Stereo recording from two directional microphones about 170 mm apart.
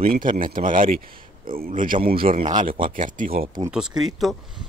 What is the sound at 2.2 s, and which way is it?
Speech, 35° right (ahead or behind).